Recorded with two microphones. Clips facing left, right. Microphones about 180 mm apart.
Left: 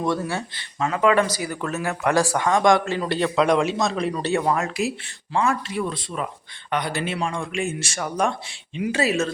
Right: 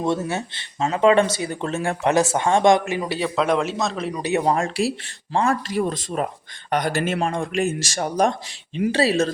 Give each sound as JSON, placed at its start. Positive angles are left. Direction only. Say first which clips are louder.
{"t": 0.0, "sound": "speech", "louder": "right 1 dB", "side_deg": -20}
{"t": 3.1, "sound": "a man's voice", "louder": "left 2 dB", "side_deg": -5}
{"t": 4.1, "sound": "speech", "louder": "right 1 dB", "side_deg": -15}
{"t": 4.4, "sound": "speech", "louder": "right 2 dB", "side_deg": -30}